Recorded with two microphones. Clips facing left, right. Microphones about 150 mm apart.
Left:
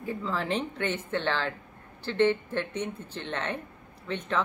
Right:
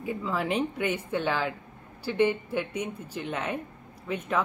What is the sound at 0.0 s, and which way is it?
Speech, 10° right (ahead or behind).